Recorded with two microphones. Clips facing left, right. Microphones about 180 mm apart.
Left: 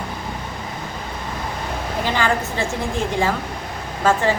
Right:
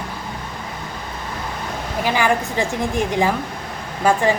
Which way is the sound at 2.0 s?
10° right (ahead or behind).